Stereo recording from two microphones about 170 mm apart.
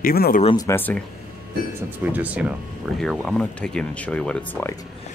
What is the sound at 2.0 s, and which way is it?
Speech, 10° right (ahead or behind).